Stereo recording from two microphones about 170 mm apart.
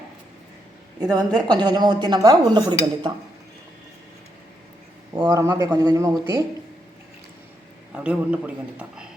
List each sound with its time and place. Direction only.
1.1 s speech: 25° right (ahead or behind)
5.1 s speech: 20° right (ahead or behind)
7.9 s a man's voice: 5° right (ahead or behind)